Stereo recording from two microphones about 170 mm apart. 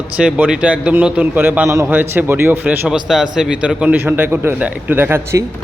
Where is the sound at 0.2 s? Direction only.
5° right (ahead or behind).